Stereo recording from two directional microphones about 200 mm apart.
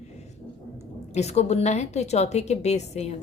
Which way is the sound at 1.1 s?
35° left (ahead or behind).